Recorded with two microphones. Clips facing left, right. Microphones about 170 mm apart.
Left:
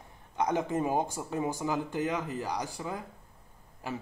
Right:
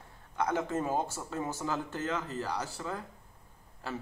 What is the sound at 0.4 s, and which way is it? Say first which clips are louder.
Speech: left 2 dB; 15° left (ahead or behind).